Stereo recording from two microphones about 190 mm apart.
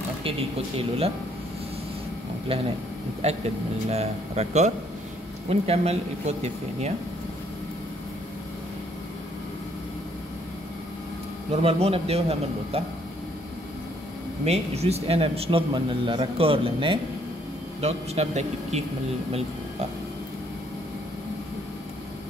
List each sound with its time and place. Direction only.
0.7 s speech: 30° right (ahead or behind)
3.2 s speech: 35° right (ahead or behind)
11.5 s speech: 30° right (ahead or behind)
14.4 s speech: 35° right (ahead or behind)